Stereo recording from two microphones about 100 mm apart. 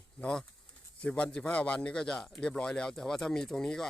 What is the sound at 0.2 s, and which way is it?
A man's voice, 5° left (ahead or behind).